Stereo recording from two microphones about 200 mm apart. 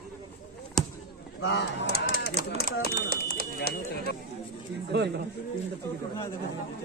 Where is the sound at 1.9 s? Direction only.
50° right (ahead or behind).